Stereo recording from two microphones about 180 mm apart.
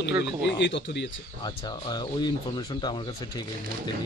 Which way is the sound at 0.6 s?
85° left.